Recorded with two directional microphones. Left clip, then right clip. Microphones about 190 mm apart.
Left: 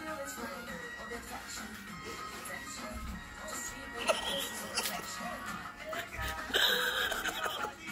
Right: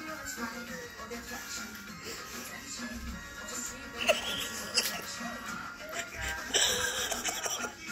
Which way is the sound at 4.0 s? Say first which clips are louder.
Right 3 dB; 15° left (ahead or behind).